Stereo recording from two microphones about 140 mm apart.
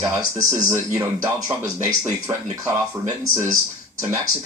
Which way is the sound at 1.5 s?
25° right (ahead or behind).